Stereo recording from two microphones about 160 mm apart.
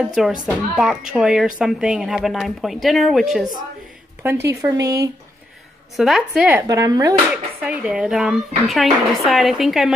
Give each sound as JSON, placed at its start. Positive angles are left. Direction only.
{"t": 0.0, "sound": "speech", "side_deg": -5}
{"t": 4.2, "sound": "speech", "side_deg": -15}
{"t": 5.9, "sound": "speech", "side_deg": 0}
{"t": 6.7, "sound": "speech", "side_deg": -20}
{"t": 7.6, "sound": "speech", "side_deg": -10}